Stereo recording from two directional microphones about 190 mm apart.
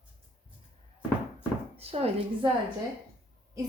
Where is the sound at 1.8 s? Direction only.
30° right (ahead or behind).